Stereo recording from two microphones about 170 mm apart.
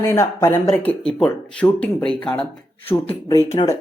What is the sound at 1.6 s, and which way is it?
Speech, 15° left (ahead or behind).